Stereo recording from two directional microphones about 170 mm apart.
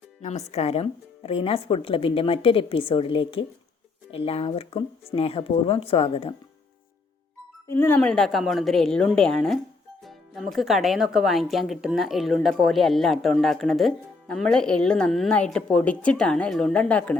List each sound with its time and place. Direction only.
0.2 s speech: 40° left (ahead or behind)
7.7 s speech: 10° left (ahead or behind)